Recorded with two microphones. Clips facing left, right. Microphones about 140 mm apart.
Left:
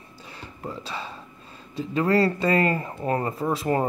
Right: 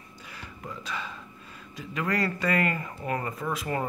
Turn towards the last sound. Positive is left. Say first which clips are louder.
# left 6 dB
turn(degrees=30)  # may be behind; listen again after turning